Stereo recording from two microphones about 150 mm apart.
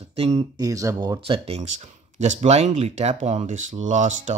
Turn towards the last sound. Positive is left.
turn(degrees=-50)  # may be behind; listen again after turning